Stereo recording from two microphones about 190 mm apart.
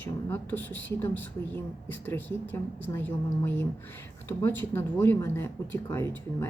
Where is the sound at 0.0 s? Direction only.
10° left (ahead or behind).